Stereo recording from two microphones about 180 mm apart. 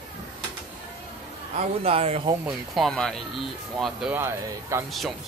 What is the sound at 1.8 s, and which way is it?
Speech, 35° right (ahead or behind).